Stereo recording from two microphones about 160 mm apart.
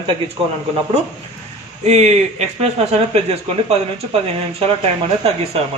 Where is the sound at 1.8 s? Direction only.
45° right (ahead or behind).